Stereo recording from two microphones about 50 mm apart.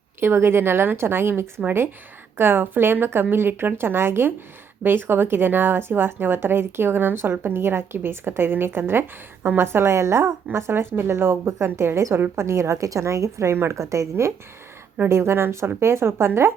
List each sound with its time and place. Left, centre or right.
0.2 s a woman's voice: right
15.1 s a woman's voice: right